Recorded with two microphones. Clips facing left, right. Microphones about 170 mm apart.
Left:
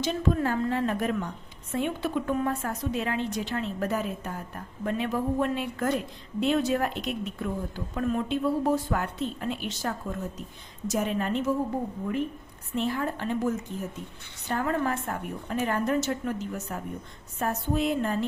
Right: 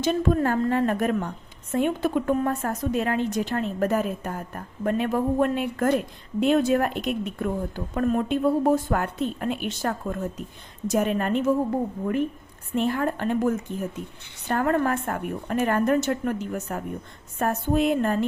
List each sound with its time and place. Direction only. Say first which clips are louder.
0.0 s a woman's voice: right 4 dB; 50° right (ahead or behind)
12.7 s a woman's voice: right 4 dB; 55° right (ahead or behind)